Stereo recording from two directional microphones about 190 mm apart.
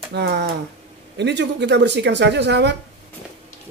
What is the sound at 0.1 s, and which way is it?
Speech, 60° right (ahead or behind).